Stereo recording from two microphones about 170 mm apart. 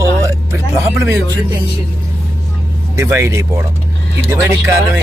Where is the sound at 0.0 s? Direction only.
15° right (ahead or behind).